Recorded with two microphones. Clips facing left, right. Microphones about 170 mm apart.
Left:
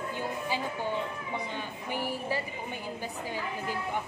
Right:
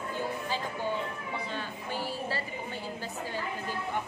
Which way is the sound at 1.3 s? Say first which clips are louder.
Left 1 dB; 15° left (ahead or behind).